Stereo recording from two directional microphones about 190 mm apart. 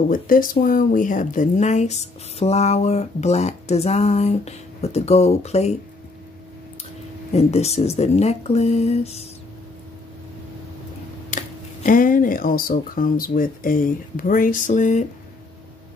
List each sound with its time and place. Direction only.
0.1 s speech: 45° left (ahead or behind)
7.3 s speech: 35° left (ahead or behind)
11.2 s speech: 45° left (ahead or behind)